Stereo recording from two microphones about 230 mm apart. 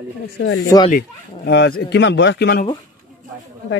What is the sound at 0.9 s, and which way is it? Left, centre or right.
Speech, left.